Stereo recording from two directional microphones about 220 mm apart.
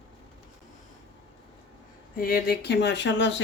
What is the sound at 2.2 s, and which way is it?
Speech, 40° left (ahead or behind).